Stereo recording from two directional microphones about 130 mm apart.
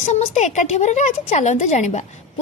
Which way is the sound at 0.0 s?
60° left (ahead or behind).